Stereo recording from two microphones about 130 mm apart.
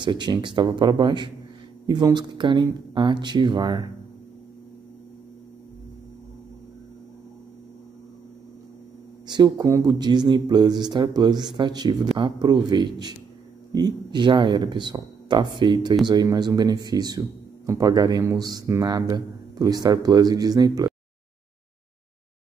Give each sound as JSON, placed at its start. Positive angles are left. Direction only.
{"t": 0.0, "sound": "speech", "side_deg": -35}
{"t": 9.3, "sound": "a man's voice", "side_deg": -30}